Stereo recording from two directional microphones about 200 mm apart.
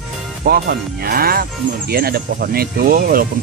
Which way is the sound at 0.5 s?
50° right (ahead or behind).